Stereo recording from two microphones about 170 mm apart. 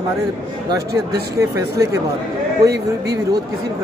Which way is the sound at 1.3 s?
20° right (ahead or behind).